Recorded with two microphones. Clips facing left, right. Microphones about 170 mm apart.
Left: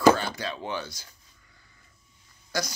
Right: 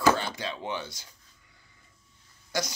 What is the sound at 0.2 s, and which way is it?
Speech, 20° right (ahead or behind).